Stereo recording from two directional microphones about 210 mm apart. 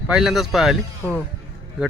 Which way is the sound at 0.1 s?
Centre (ahead or behind).